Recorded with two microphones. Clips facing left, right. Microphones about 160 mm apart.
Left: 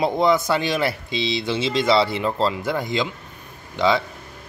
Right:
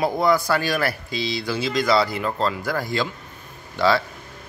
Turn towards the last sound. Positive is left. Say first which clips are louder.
# even
turn(degrees=20)  # may be behind; listen again after turning